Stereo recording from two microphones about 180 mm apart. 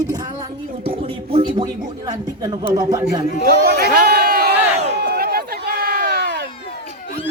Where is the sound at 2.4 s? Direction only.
20° right (ahead or behind).